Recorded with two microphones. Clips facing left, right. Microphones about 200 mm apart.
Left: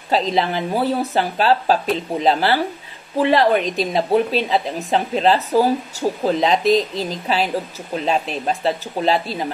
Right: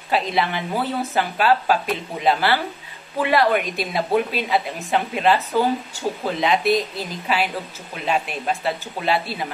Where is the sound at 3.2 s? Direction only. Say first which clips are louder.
Left 3 dB; 35° left (ahead or behind).